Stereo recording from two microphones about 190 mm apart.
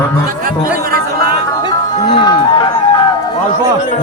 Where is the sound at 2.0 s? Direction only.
20° left (ahead or behind).